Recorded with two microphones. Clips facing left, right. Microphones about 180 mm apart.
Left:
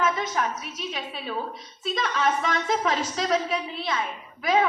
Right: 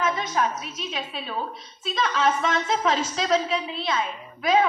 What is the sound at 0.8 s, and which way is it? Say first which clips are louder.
Speech: right 1 dB; 25° right (ahead or behind).